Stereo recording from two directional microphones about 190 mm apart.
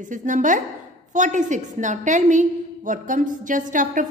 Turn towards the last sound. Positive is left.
turn(degrees=-45)  # may be behind; listen again after turning